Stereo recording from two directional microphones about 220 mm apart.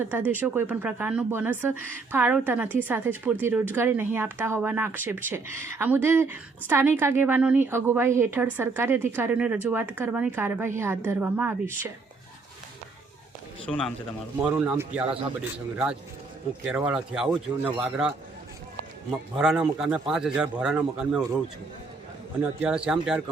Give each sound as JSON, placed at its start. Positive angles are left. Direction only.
{"t": 0.0, "sound": "a woman's voice", "side_deg": -10}
{"t": 13.7, "sound": "a man's voice", "side_deg": 5}
{"t": 16.6, "sound": "a man's voice", "side_deg": -5}
{"t": 19.1, "sound": "a man's voice", "side_deg": 0}
{"t": 22.6, "sound": "a man's voice", "side_deg": -5}